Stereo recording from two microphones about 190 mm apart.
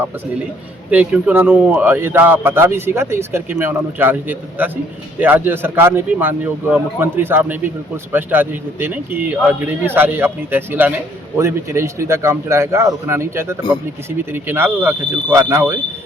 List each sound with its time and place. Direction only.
0.9 s speech: 5° right (ahead or behind)